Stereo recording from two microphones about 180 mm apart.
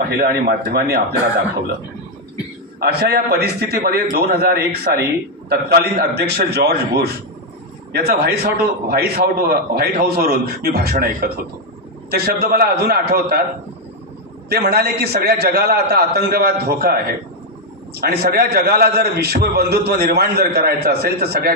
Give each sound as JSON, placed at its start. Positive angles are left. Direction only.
{"t": 0.1, "sound": "a man's voice", "side_deg": -60}
{"t": 2.8, "sound": "a man's voice", "side_deg": -60}
{"t": 14.5, "sound": "a man's voice", "side_deg": -60}
{"t": 18.0, "sound": "a man's voice", "side_deg": -60}